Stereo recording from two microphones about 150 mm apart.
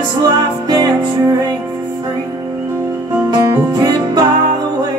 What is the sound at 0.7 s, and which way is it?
Music, 25° right (ahead or behind).